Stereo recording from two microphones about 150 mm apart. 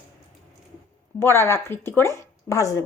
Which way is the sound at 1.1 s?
15° left (ahead or behind).